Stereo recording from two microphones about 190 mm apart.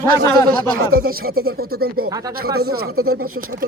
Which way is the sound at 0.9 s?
50° right (ahead or behind).